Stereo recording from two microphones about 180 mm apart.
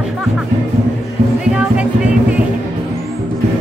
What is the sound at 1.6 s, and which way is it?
Music, 5° right (ahead or behind).